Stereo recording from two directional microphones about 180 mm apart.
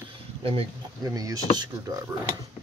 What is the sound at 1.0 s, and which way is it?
Speech, 20° right (ahead or behind).